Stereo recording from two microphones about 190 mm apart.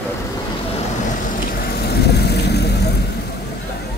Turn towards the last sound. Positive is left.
turn(degrees=60)  # may be behind; listen again after turning